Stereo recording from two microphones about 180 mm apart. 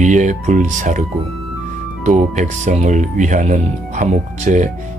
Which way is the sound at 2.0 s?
40° right (ahead or behind).